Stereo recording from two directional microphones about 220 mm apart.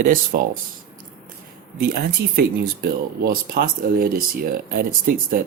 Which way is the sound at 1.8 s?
45° right (ahead or behind).